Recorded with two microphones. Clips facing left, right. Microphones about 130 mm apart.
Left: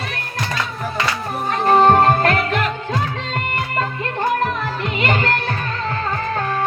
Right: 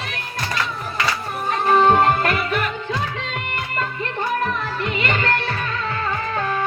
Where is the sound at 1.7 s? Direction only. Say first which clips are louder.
Left 3 dB; 45° left (ahead or behind).